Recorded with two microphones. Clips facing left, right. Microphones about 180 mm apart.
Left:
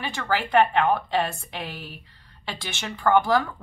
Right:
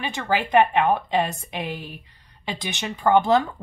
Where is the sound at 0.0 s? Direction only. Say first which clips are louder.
Right 2 dB; 20° right (ahead or behind).